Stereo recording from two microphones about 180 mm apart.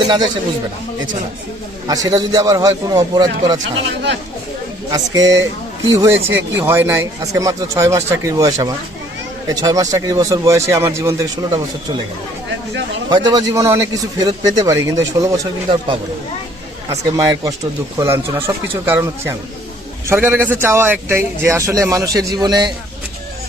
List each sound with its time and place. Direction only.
1.9 s speech: 20° right (ahead or behind)
3.6 s speech: 75° right (ahead or behind)
4.9 s speech: 20° right (ahead or behind)
13.1 s speech: 25° right (ahead or behind)
16.9 s speech: 15° right (ahead or behind)